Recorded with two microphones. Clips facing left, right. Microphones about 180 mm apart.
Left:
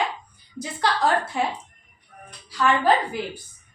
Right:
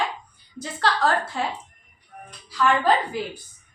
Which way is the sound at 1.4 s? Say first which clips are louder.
Left 2 dB; 15° left (ahead or behind).